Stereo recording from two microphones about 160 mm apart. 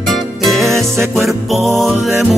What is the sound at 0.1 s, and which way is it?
Music, centre (ahead or behind).